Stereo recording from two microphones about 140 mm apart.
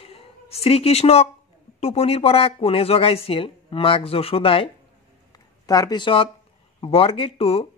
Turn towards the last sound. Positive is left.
turn(degrees=45)  # may be behind; listen again after turning